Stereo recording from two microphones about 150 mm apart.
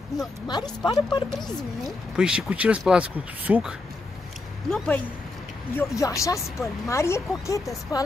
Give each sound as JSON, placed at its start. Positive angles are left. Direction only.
{"t": 0.5, "sound": "speech", "side_deg": 30}
{"t": 2.1, "sound": "speech", "side_deg": -5}
{"t": 4.6, "sound": "speech", "side_deg": 5}
{"t": 5.8, "sound": "speech", "side_deg": 20}